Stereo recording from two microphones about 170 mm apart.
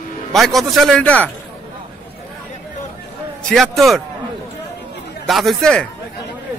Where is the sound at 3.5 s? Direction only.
Centre (ahead or behind).